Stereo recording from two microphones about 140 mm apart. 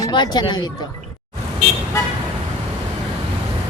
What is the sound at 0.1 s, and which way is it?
Speech, 35° left (ahead or behind).